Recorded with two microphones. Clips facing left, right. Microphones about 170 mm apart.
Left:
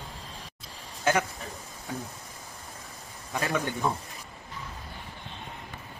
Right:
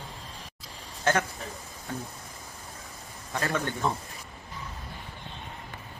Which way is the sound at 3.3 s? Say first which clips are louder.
Left 1 dB; 15° left (ahead or behind).